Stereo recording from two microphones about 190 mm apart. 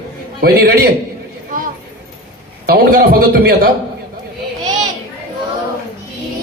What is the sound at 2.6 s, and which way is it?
A man's voice, 50° right (ahead or behind).